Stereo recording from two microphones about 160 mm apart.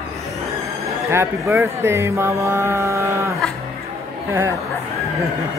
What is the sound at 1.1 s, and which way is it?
Speech, 15° right (ahead or behind).